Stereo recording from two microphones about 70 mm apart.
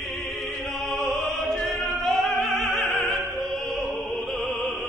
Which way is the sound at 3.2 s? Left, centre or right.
Right.